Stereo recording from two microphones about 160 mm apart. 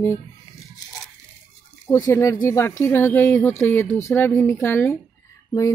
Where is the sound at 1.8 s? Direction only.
20° left (ahead or behind).